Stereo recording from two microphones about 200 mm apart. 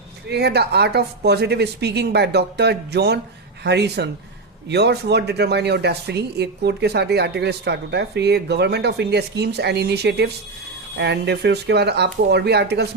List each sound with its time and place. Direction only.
0.3 s speech: 55° right (ahead or behind)